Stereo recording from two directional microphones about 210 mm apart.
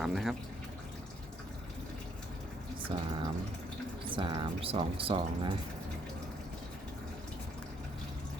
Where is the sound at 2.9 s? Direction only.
25° right (ahead or behind).